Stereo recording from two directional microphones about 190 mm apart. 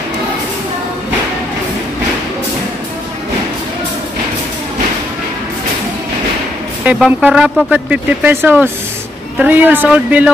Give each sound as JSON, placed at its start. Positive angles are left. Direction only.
{"t": 6.8, "sound": "speech", "side_deg": -5}